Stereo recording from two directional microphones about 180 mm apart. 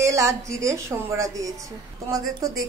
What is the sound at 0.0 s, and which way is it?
A woman's voice, 15° right (ahead or behind).